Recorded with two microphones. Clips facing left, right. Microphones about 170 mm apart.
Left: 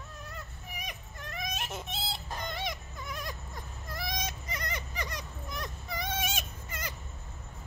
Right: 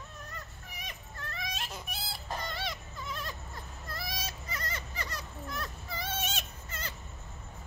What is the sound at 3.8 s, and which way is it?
Baby cry, 15° left (ahead or behind).